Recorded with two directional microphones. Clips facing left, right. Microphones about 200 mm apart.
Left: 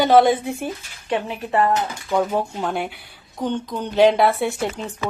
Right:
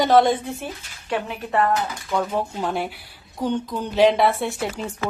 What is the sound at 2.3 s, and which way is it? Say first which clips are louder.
A woman's voice: left 1 dB; centre (ahead or behind).